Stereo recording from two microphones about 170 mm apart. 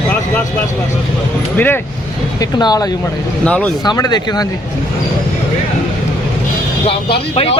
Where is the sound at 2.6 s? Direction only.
25° left (ahead or behind).